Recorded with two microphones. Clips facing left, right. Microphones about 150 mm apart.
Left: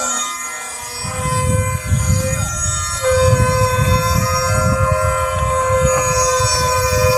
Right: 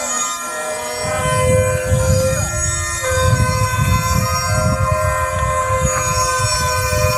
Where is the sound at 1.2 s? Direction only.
70° right (ahead or behind); by 2.2 s 90° right.